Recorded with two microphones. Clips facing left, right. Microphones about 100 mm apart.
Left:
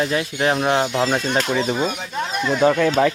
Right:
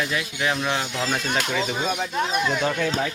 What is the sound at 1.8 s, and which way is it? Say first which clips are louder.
Speech: left 1 dB; centre (ahead or behind).